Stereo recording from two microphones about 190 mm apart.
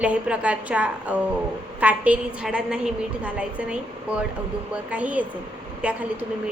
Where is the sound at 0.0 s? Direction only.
5° right (ahead or behind).